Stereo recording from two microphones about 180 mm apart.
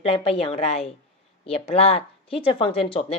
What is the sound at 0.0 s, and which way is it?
Speech, 35° left (ahead or behind).